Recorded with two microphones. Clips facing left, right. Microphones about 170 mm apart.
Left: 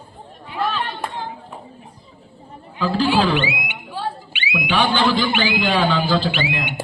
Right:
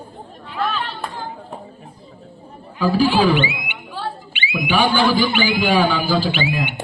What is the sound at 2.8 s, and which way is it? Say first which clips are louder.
Speech: right 2 dB; 10° right (ahead or behind).